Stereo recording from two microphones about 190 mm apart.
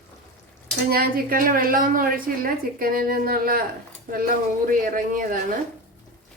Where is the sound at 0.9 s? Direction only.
50° right (ahead or behind).